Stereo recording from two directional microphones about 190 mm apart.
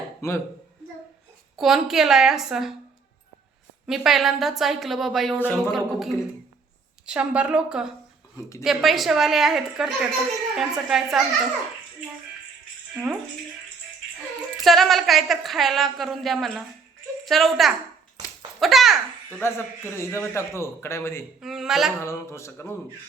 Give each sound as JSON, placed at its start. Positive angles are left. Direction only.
{"t": 0.2, "sound": "a man's voice", "side_deg": 15}
{"t": 1.5, "sound": "a woman's voice", "side_deg": 0}
{"t": 3.8, "sound": "a woman's voice", "side_deg": 0}
{"t": 14.6, "sound": "a woman's voice", "side_deg": 0}
{"t": 19.4, "sound": "a man's voice", "side_deg": 15}
{"t": 21.4, "sound": "a woman's voice", "side_deg": 0}
{"t": 22.0, "sound": "a man's voice", "side_deg": 15}